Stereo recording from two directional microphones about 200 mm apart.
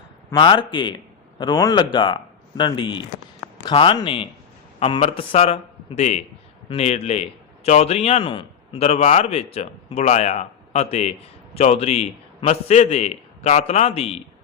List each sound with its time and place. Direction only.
0.3 s a man's voice: 25° left (ahead or behind)